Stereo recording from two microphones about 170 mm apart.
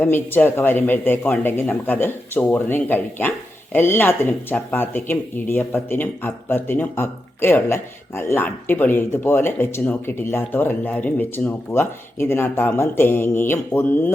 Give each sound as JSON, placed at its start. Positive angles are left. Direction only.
{"t": 0.0, "sound": "speech", "side_deg": 10}